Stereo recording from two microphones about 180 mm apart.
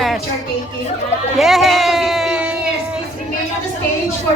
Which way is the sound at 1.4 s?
Centre (ahead or behind).